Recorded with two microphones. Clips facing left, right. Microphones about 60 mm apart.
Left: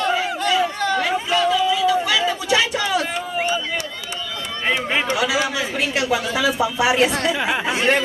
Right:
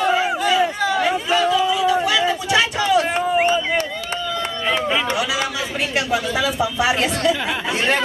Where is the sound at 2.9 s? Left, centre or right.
Right.